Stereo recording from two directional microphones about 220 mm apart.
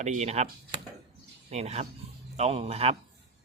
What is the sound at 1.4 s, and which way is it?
Speech, 30° right (ahead or behind).